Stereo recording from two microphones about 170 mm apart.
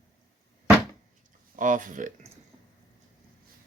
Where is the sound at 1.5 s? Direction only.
50° right (ahead or behind).